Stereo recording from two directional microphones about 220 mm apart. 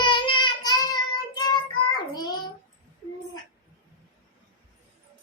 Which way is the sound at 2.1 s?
20° left (ahead or behind).